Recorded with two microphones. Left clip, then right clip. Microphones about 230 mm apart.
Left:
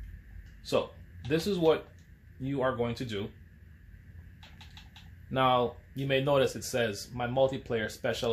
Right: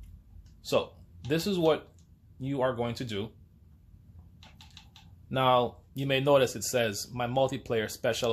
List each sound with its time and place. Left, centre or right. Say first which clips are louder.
0.7 s speech: right 1 dB; right
5.3 s speech: right 1 dB; right